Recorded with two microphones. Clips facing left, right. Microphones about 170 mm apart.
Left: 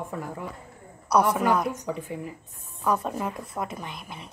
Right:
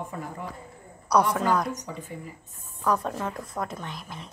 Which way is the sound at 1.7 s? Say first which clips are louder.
Left 4 dB; 60° left (ahead or behind).